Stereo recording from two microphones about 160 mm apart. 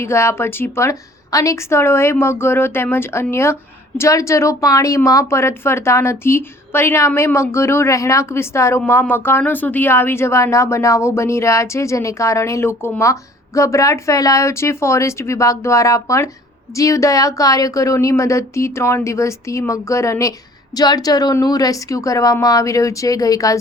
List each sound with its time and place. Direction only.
0.0 s a woman's voice: 15° left (ahead or behind)